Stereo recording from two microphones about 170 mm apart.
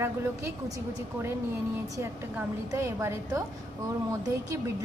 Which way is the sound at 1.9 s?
15° right (ahead or behind).